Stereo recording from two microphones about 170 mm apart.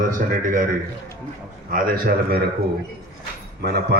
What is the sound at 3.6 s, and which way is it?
Speech, 70° right (ahead or behind).